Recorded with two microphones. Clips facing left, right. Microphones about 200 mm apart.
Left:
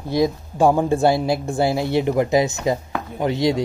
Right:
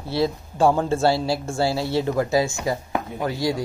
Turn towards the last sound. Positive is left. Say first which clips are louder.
# left 4 dB
turn(degrees=20)  # may be behind; listen again after turning